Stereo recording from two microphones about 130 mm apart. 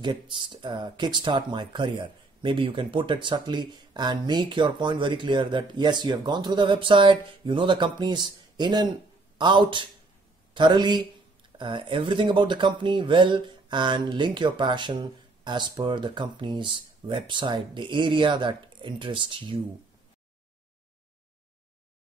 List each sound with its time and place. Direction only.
0.0 s speech: 40° right (ahead or behind)